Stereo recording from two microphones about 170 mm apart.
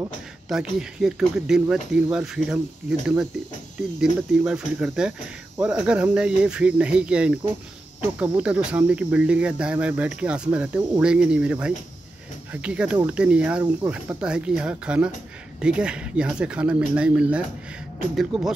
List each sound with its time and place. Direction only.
0.5 s speech: 5° right (ahead or behind)